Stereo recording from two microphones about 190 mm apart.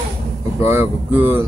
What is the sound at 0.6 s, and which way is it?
Speech, 10° right (ahead or behind).